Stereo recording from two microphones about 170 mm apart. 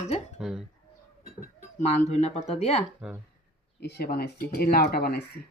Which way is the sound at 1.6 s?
45° left (ahead or behind).